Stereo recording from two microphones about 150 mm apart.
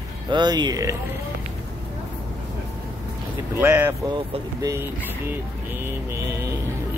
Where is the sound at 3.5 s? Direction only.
15° right (ahead or behind).